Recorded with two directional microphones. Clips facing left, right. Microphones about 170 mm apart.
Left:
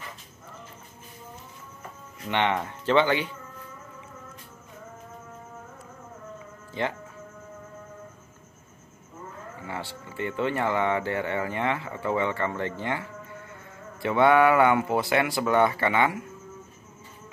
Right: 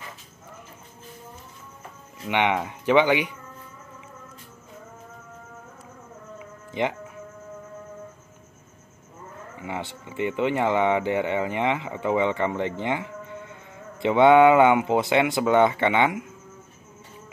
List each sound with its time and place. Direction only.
2.2 s speech: 15° right (ahead or behind)
6.7 s speech: 15° right (ahead or behind)
9.6 s speech: 20° right (ahead or behind)